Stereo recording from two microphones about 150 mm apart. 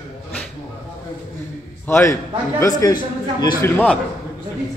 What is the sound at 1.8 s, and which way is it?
A man's voice, 15° left (ahead or behind).